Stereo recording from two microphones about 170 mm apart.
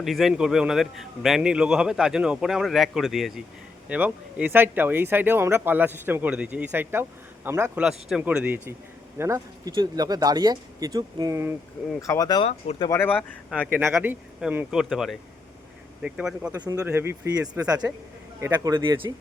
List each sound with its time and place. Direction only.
0.0 s a man's voice: centre (ahead or behind); by 11.5 s 15° right (ahead or behind)
11.9 s speech: 20° left (ahead or behind)
13.9 s a man's voice: 10° right (ahead or behind)
16.5 s speech: 20° right (ahead or behind)
17.6 s speech: 20° right (ahead or behind)